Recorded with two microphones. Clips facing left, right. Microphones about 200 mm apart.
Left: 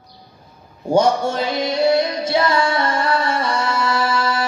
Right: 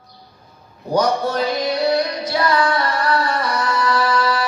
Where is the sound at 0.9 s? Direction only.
25° left (ahead or behind).